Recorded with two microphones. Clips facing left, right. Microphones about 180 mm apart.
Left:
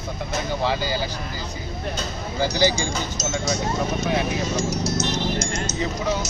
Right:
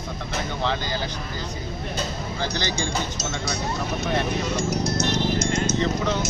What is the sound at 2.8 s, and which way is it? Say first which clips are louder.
Speech: left 1 dB; 60° right (ahead or behind).